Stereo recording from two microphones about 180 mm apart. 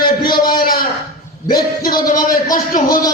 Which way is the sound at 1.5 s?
55° left (ahead or behind).